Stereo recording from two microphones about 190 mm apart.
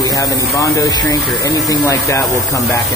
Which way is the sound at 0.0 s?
15° left (ahead or behind).